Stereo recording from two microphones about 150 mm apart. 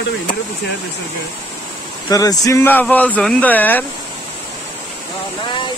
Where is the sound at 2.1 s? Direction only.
25° left (ahead or behind).